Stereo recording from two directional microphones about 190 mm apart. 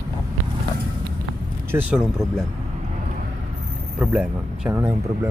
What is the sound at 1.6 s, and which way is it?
Speech, 10° right (ahead or behind).